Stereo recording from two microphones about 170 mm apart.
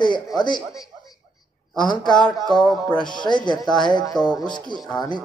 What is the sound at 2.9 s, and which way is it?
A man's voice, 25° left (ahead or behind).